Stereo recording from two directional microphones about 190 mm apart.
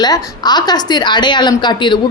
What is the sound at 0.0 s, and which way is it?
A woman's voice, 20° left (ahead or behind).